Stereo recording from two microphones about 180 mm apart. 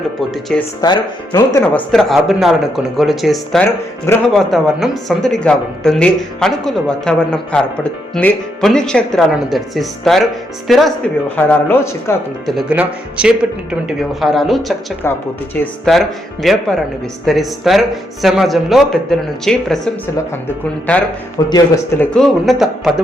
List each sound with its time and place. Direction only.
0.2 s speech: centre (ahead or behind)
0.8 s speech: 20° left (ahead or behind)
1.7 s speech: centre (ahead or behind)
11.3 s a man's voice: 10° left (ahead or behind)
12.5 s speech: 5° right (ahead or behind)
21.5 s speech: 10° left (ahead or behind)